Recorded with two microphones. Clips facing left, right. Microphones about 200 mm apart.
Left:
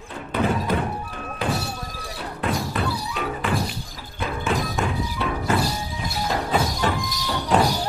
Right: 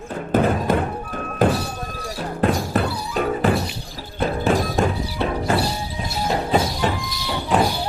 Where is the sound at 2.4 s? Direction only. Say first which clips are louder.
Right 5 dB; 45° right (ahead or behind).